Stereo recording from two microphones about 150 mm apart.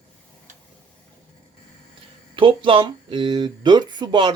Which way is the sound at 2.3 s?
35° right (ahead or behind).